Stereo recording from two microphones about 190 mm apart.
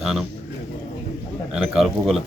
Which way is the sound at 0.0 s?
Centre (ahead or behind).